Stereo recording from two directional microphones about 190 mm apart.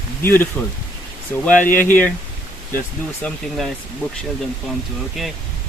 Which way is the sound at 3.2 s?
Centre (ahead or behind).